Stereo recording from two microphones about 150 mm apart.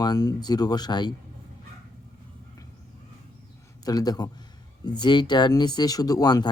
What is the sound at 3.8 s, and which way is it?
Speech, 25° left (ahead or behind).